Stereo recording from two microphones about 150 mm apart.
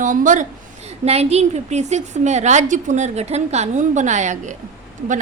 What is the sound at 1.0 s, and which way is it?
A woman's voice, 45° right (ahead or behind).